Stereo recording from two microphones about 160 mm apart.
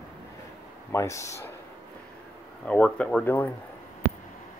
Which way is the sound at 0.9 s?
20° left (ahead or behind).